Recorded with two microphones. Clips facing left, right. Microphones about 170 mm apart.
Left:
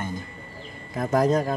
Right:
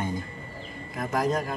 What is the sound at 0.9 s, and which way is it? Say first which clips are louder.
Speech: left 5 dB; 30° left (ahead or behind).